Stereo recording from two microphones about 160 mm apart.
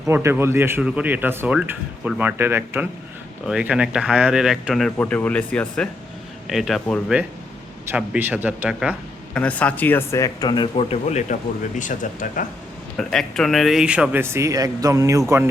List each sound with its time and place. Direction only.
0.1 s speech: 15° right (ahead or behind)
4.9 s speech: 10° left (ahead or behind); by 9.0 s 10° right (ahead or behind)
9.3 s speech: 10° left (ahead or behind); by 12.5 s 55° left (ahead or behind)
13.0 s speech: 5° left (ahead or behind); by 15.2 s 20° right (ahead or behind)